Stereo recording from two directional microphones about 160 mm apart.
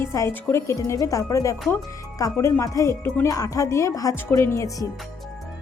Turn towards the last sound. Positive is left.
turn(degrees=20)  # may be behind; listen again after turning